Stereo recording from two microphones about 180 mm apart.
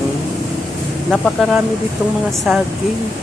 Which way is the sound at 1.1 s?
Centre (ahead or behind).